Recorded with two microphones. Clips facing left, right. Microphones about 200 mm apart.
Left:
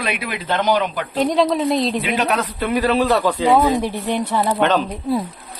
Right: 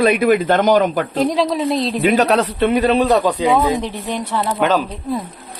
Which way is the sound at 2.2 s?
30° right (ahead or behind).